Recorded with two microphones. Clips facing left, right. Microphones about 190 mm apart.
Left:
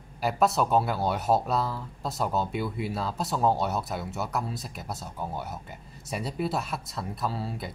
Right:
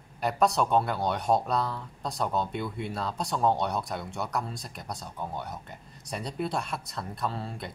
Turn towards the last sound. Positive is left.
turn(degrees=5)  # may be behind; listen again after turning